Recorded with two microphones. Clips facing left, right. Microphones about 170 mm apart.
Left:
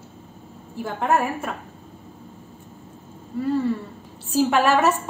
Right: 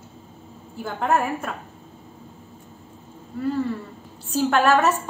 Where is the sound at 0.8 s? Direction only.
Centre (ahead or behind).